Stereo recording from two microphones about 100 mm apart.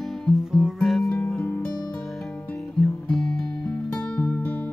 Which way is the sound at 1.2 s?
10° left (ahead or behind).